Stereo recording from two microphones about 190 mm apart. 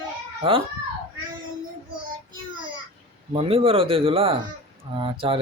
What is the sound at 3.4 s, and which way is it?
Speech, 30° right (ahead or behind).